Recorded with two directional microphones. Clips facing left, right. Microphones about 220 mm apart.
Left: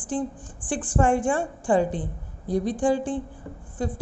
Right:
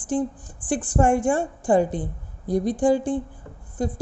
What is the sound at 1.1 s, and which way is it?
A woman's voice, 40° right (ahead or behind).